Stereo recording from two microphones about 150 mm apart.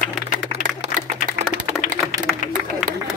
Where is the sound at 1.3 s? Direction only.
60° right (ahead or behind).